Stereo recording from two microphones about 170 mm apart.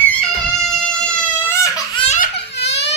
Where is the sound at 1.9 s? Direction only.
35° left (ahead or behind).